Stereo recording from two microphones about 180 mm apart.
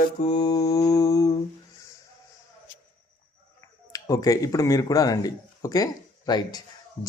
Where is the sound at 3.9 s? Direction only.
20° left (ahead or behind).